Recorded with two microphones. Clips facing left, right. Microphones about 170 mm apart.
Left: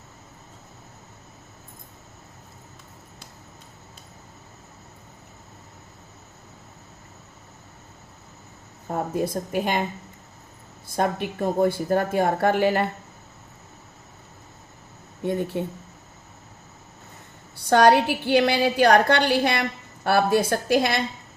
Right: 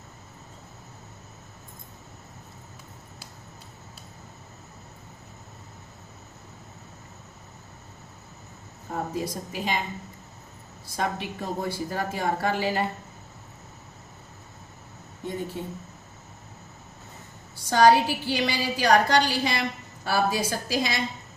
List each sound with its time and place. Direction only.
8.9 s speech: 55° left (ahead or behind)
10.8 s speech: 55° left (ahead or behind)
15.3 s speech: 65° left (ahead or behind)
17.7 s speech: 60° left (ahead or behind)